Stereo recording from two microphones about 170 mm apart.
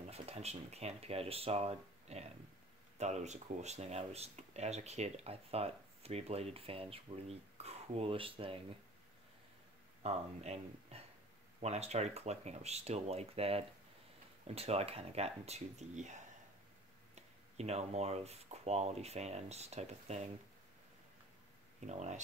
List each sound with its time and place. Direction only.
0.1 s speech: 40° right (ahead or behind)
10.0 s speech: 40° right (ahead or behind)
21.8 s speech: 45° right (ahead or behind)